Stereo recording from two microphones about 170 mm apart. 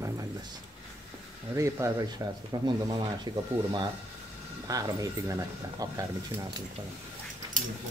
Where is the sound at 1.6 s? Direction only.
15° right (ahead or behind).